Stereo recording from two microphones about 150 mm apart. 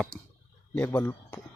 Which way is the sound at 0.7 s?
15° left (ahead or behind).